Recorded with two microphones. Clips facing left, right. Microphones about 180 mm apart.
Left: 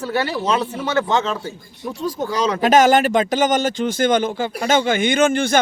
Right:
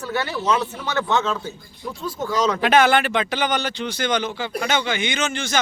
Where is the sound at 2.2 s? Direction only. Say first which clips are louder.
Left 1 dB; 40° left (ahead or behind).